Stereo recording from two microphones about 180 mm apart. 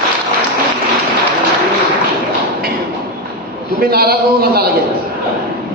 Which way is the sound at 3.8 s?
60° right (ahead or behind).